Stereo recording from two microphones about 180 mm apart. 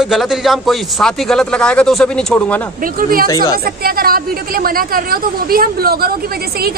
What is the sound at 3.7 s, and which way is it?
A woman's voice, 55° right (ahead or behind).